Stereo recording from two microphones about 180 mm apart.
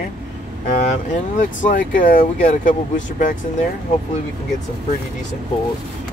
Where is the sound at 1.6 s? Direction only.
50° left (ahead or behind).